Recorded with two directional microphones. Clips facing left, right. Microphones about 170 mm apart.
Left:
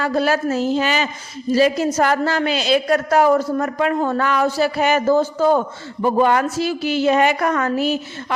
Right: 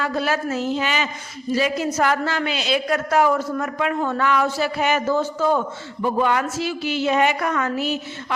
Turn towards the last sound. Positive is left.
turn(degrees=40)  # may be behind; listen again after turning